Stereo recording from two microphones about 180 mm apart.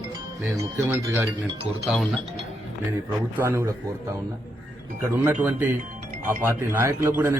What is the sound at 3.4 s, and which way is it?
Speech, 15° right (ahead or behind).